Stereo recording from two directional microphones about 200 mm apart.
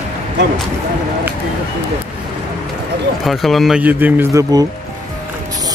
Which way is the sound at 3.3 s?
Centre (ahead or behind).